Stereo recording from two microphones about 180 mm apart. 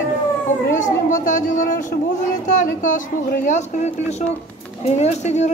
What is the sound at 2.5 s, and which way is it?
A man's voice, 45° left (ahead or behind).